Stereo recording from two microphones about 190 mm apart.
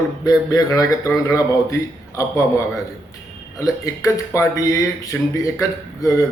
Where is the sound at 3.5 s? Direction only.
15° left (ahead or behind).